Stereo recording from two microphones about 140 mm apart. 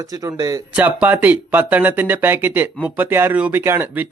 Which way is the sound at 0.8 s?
10° right (ahead or behind).